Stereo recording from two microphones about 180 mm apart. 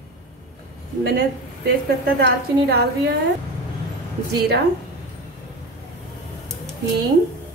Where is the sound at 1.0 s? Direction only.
60° right (ahead or behind).